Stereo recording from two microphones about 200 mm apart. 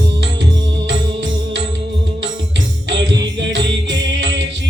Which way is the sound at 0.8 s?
65° right (ahead or behind).